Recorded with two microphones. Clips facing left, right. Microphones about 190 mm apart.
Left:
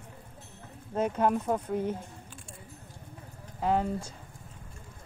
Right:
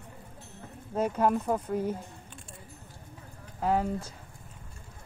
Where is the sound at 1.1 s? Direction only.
Centre (ahead or behind).